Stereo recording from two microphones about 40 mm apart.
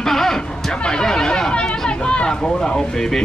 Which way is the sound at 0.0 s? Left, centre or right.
Centre.